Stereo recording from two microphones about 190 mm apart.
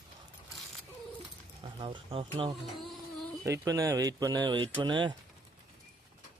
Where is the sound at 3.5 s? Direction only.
15° right (ahead or behind).